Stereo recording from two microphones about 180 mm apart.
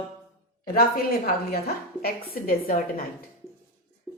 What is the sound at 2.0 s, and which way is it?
A woman's voice, 55° left (ahead or behind).